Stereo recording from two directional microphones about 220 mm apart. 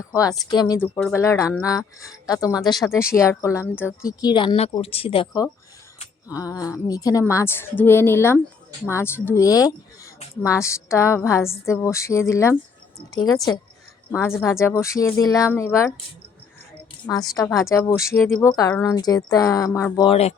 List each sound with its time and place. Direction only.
0.0 s speech: 15° left (ahead or behind)
17.1 s speech: 15° left (ahead or behind)
20.1 s speech: 30° left (ahead or behind)